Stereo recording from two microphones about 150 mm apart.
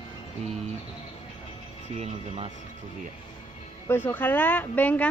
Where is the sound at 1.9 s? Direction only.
45° right (ahead or behind).